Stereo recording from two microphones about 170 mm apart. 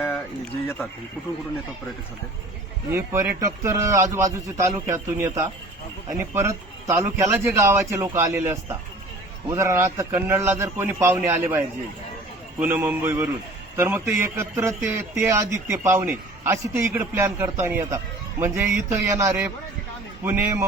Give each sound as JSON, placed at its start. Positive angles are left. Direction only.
{"t": 2.9, "sound": "a man's voice", "side_deg": -15}